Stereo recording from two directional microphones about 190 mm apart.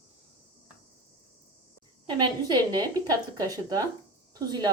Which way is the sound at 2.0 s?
20° right (ahead or behind).